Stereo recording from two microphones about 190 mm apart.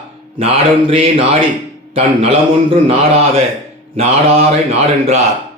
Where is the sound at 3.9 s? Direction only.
30° right (ahead or behind).